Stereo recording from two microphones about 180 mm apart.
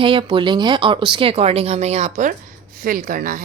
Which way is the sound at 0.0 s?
30° right (ahead or behind).